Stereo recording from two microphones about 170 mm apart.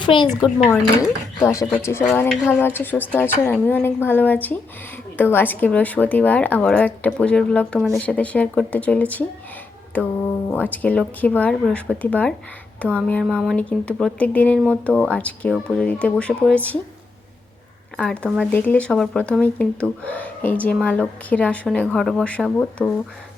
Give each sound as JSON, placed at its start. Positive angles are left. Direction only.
{"t": 0.0, "sound": "speech", "side_deg": 30}
{"t": 0.9, "sound": "a woman's voice", "side_deg": 20}
{"t": 17.9, "sound": "a woman's voice", "side_deg": 5}